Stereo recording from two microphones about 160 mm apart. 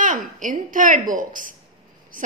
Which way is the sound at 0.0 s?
55° right (ahead or behind).